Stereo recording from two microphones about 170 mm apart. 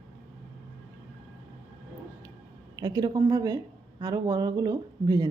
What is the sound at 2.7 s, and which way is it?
A woman's voice, 25° right (ahead or behind).